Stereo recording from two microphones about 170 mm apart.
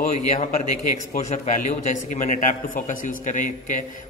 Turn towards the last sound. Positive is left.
turn(degrees=45)  # may be behind; listen again after turning